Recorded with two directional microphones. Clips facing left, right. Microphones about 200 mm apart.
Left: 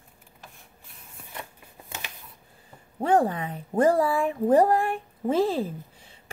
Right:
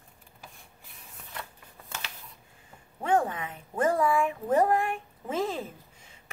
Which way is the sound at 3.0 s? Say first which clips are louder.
Left 4 dB; 35° left (ahead or behind).